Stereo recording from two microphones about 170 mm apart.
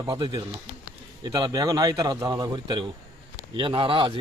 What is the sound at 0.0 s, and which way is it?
A man's voice, 25° right (ahead or behind).